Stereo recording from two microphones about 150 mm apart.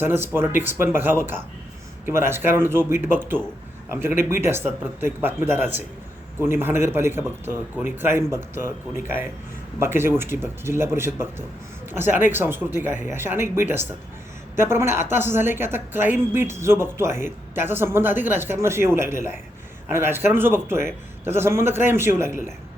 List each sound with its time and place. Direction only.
0.0 s a woman's voice: 15° right (ahead or behind)